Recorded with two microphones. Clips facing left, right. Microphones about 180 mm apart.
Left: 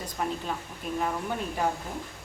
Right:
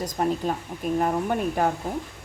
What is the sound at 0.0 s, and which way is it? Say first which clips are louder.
A woman's voice: right 7 dB; 40° right (ahead or behind).